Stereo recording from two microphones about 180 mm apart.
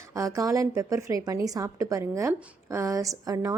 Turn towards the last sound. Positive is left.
turn(degrees=-20)  # may be behind; listen again after turning